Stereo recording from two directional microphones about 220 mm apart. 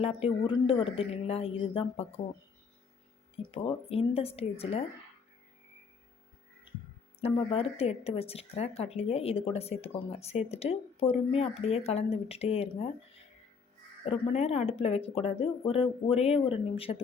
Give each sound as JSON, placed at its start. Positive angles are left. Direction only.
{"t": 0.0, "sound": "speech", "side_deg": 25}
{"t": 3.5, "sound": "speech", "side_deg": 25}
{"t": 7.2, "sound": "speech", "side_deg": 25}